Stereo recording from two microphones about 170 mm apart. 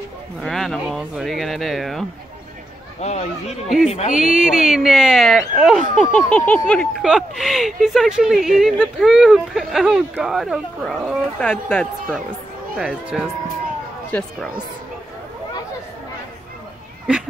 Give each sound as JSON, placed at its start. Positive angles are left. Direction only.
{"t": 0.4, "sound": "speech", "side_deg": 0}
{"t": 3.0, "sound": "speech", "side_deg": 40}
{"t": 4.2, "sound": "speech", "side_deg": -5}
{"t": 12.7, "sound": "speech", "side_deg": -5}
{"t": 14.1, "sound": "speech", "side_deg": 10}